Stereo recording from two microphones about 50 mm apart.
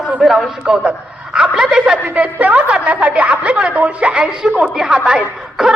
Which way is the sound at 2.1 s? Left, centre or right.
Right.